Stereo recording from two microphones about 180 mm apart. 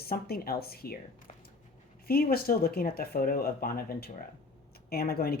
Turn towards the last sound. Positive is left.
turn(degrees=55)  # may be behind; listen again after turning